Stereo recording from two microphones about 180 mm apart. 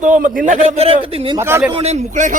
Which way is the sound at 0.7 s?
35° right (ahead or behind).